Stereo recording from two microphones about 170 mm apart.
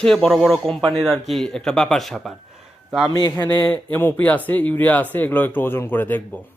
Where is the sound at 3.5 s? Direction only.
10° left (ahead or behind).